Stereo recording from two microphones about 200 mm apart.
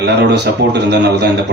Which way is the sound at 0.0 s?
55° right (ahead or behind).